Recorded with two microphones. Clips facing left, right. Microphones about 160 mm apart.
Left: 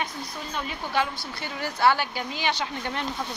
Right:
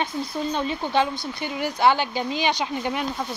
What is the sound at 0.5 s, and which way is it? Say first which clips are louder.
Speech: right 4 dB; 30° right (ahead or behind).